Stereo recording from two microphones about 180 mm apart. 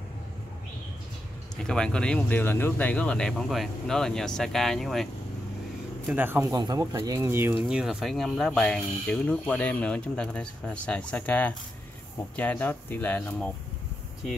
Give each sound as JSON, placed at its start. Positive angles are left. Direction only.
{"t": 1.6, "sound": "speech", "side_deg": 5}
{"t": 6.0, "sound": "speech", "side_deg": -10}
{"t": 7.5, "sound": "speech", "side_deg": 0}